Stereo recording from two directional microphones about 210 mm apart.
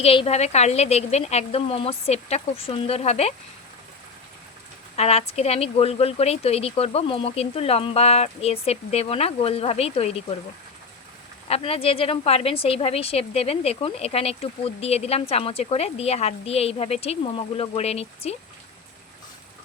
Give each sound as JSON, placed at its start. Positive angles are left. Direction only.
{"t": 0.0, "sound": "a woman's voice", "side_deg": 25}
{"t": 4.9, "sound": "a woman's voice", "side_deg": 30}
{"t": 11.4, "sound": "a woman's voice", "side_deg": 30}